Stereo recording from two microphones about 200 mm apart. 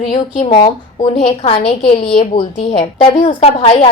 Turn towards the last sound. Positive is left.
turn(degrees=30)  # may be behind; listen again after turning